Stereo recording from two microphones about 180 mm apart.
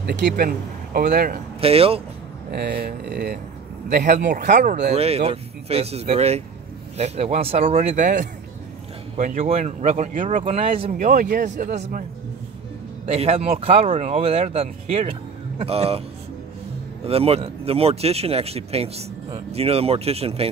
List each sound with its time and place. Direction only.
0.0 s speech: 70° right (ahead or behind)
1.6 s speech: 30° right (ahead or behind)
2.5 s speech: 65° right (ahead or behind)
4.3 s speech: 45° right (ahead or behind)
10.9 s speech: 45° right (ahead or behind)
13.0 s speech: 35° right (ahead or behind)
17.0 s speech: 35° right (ahead or behind)